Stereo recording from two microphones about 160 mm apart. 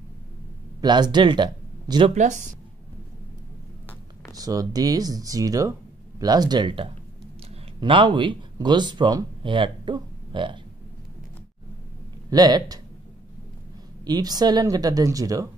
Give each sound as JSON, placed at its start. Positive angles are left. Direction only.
{"t": 0.7, "sound": "speech", "side_deg": -25}
{"t": 2.1, "sound": "speech", "side_deg": -50}
{"t": 4.4, "sound": "speech", "side_deg": -25}
{"t": 12.3, "sound": "speech", "side_deg": -25}
{"t": 14.0, "sound": "speech", "side_deg": -25}